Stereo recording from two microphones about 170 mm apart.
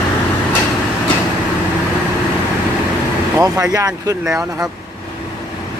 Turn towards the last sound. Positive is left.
turn(degrees=-20)  # may be behind; listen again after turning